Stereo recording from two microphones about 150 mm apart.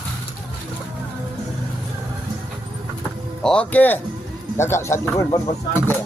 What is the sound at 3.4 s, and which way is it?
Speech, 5° left (ahead or behind).